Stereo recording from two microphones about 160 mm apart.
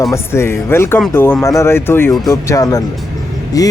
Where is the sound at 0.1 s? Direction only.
15° left (ahead or behind).